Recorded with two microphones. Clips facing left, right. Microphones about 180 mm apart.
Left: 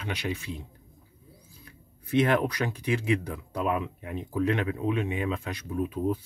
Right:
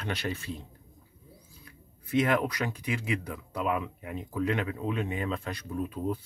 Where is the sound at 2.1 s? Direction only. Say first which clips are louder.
Left 2 dB; 25° left (ahead or behind).